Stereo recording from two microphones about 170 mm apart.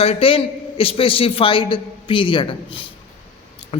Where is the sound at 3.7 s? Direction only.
35° left (ahead or behind).